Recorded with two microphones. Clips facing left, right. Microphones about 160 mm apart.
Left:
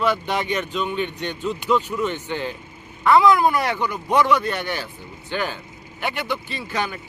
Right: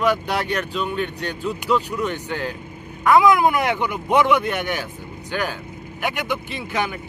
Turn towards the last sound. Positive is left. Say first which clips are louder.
# right 2 dB
turn(degrees=-15)  # may be behind; listen again after turning